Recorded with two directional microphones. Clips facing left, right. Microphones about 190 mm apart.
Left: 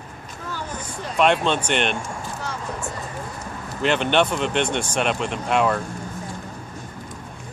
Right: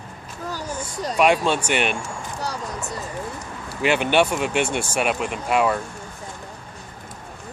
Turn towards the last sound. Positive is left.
turn(degrees=-5)  # may be behind; listen again after turning